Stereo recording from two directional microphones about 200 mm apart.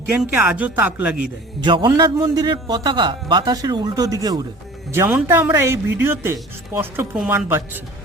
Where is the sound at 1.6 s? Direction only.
25° right (ahead or behind).